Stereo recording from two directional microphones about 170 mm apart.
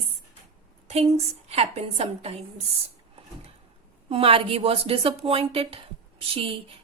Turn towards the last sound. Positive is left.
turn(degrees=-35)  # may be behind; listen again after turning